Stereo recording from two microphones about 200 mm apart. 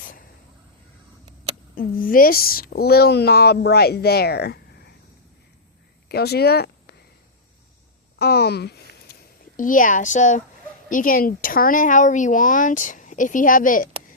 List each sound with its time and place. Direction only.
1.7 s speech: 45° left (ahead or behind)
6.1 s speech: 55° left (ahead or behind)
8.2 s speech: 55° left (ahead or behind)
9.6 s a woman's voice: 40° left (ahead or behind)